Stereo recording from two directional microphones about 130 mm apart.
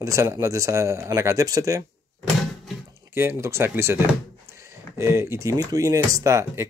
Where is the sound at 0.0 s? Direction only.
20° right (ahead or behind).